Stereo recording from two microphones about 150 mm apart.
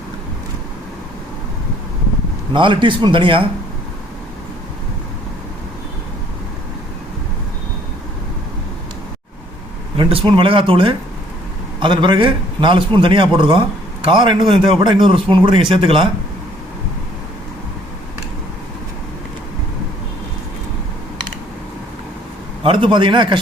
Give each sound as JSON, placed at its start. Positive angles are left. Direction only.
{"t": 2.5, "sound": "a man's voice", "side_deg": -35}
{"t": 10.0, "sound": "a man's voice", "side_deg": -35}
{"t": 22.6, "sound": "a man's voice", "side_deg": -35}